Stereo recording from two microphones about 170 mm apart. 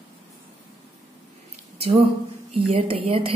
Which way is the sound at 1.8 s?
35° right (ahead or behind).